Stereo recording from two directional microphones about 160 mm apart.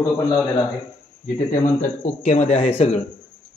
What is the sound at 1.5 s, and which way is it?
Speech, 50° left (ahead or behind).